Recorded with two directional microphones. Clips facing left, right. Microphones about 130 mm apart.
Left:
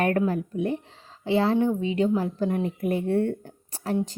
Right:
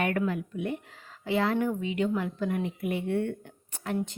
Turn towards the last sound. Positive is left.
turn(degrees=35)  # may be behind; listen again after turning